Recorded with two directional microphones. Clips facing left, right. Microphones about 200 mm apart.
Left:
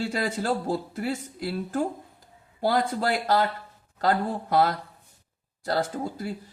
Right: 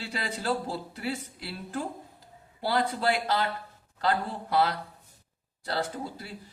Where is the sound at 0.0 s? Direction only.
50° left (ahead or behind).